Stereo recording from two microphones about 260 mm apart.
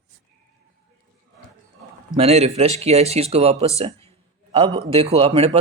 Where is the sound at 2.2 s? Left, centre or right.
Right.